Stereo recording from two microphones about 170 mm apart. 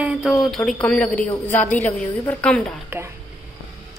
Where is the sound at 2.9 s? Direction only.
15° right (ahead or behind).